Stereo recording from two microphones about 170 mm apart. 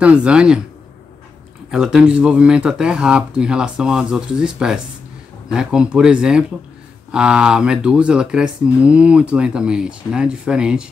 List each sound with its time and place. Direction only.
0.0 s speech: 5° right (ahead or behind)
1.7 s speech: 5° right (ahead or behind)